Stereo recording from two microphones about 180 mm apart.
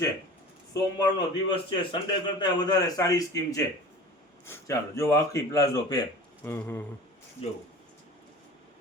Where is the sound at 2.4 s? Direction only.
25° left (ahead or behind).